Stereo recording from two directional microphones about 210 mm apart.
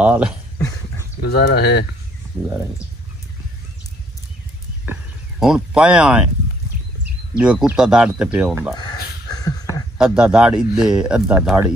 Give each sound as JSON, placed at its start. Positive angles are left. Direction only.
{"t": 0.0, "sound": "speech", "side_deg": -5}
{"t": 1.2, "sound": "speech", "side_deg": 50}
{"t": 5.4, "sound": "speech", "side_deg": 0}
{"t": 7.3, "sound": "speech", "side_deg": -5}
{"t": 8.7, "sound": "speech", "side_deg": 20}
{"t": 9.9, "sound": "speech", "side_deg": -5}